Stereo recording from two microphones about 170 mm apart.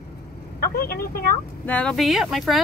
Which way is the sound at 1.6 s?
10° left (ahead or behind).